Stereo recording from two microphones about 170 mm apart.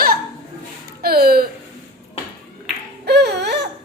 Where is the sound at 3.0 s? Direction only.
75° right (ahead or behind).